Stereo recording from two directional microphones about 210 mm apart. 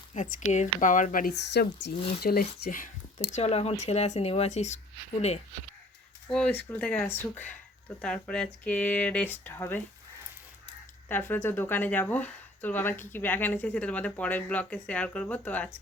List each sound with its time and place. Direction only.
0.1 s speech: 35° left (ahead or behind)
6.2 s speech: 5° left (ahead or behind)
11.1 s speech: 10° left (ahead or behind)